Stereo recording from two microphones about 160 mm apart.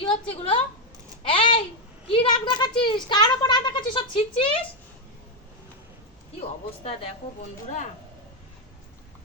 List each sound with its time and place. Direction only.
0.0 s a sound: 35° left (ahead or behind)
2.0 s speech: 30° left (ahead or behind)
6.7 s a woman's voice: 35° left (ahead or behind)